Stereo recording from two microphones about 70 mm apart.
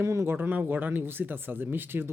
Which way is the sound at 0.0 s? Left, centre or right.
Right.